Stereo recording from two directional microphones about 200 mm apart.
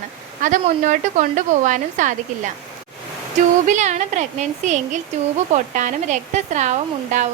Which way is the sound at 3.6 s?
35° right (ahead or behind).